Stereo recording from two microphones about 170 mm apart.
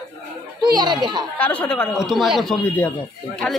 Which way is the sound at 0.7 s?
25° right (ahead or behind).